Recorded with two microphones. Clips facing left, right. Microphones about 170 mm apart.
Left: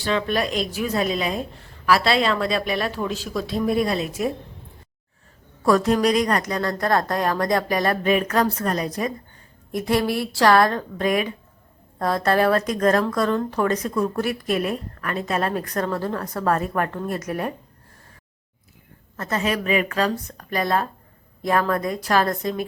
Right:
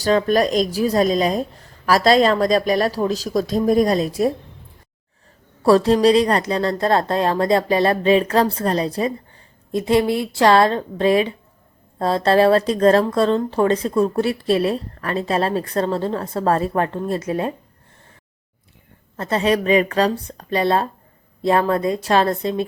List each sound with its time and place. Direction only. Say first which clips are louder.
0.0 s speech: right 6 dB; 40° right (ahead or behind)
5.6 s speech: right 5 dB; 30° right (ahead or behind)
19.1 s speech: right 5 dB; 30° right (ahead or behind)